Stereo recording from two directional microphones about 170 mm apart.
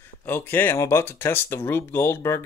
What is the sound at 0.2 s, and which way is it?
Speech, 10° left (ahead or behind).